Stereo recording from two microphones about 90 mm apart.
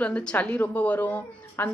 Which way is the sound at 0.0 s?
15° left (ahead or behind).